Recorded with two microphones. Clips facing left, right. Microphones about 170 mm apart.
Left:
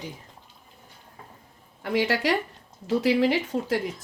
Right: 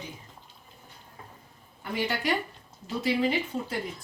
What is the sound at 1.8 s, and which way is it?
Speech, 90° left.